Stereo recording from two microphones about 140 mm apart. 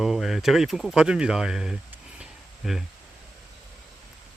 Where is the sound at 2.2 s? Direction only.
Centre (ahead or behind).